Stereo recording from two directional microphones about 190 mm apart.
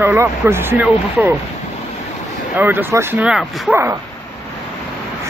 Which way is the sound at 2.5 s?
10° right (ahead or behind).